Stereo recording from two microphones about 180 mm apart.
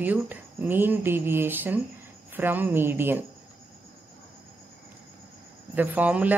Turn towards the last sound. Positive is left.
turn(degrees=-10)  # may be behind; listen again after turning